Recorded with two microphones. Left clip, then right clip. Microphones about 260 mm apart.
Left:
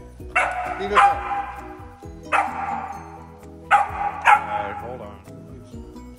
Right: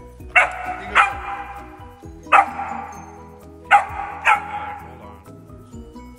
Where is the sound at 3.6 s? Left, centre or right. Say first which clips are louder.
Right 2 dB; centre.